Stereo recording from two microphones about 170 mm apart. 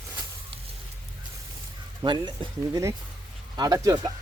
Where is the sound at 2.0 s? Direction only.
25° right (ahead or behind).